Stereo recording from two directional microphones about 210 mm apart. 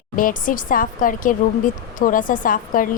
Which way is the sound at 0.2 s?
40° left (ahead or behind).